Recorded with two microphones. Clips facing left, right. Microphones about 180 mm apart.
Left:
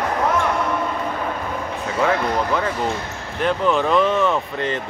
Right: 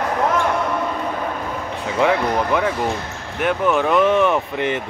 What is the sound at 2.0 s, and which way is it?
Speech, 15° right (ahead or behind).